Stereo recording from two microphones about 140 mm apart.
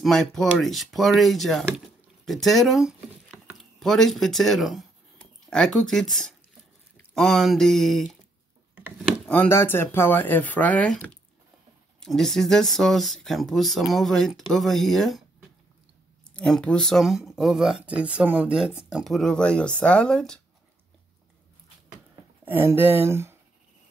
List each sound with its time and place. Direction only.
0.0 s speech: centre (ahead or behind)
9.2 s speech: 10° left (ahead or behind)
16.3 s speech: 5° left (ahead or behind)
22.5 s speech: 15° right (ahead or behind)